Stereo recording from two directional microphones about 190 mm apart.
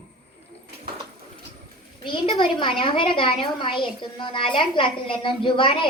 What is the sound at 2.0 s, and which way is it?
A woman's voice, 25° left (ahead or behind).